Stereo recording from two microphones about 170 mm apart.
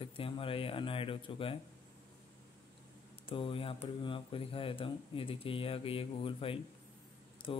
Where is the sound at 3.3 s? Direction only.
30° left (ahead or behind).